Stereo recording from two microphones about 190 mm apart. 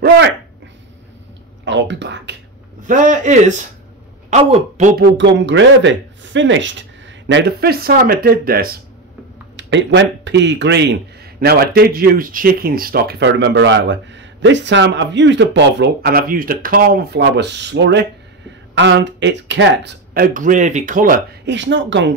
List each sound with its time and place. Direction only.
1.6 s speech: 75° right (ahead or behind)
2.9 s a man's voice: 40° right (ahead or behind)
5.1 s speech: 70° right (ahead or behind); by 8.7 s 50° right (ahead or behind)
9.6 s a man's voice: 70° right (ahead or behind)
20.3 s speech: 45° right (ahead or behind)
21.5 s speech: 70° right (ahead or behind)